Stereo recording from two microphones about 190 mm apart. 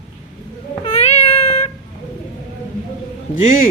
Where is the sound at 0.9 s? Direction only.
35° left (ahead or behind).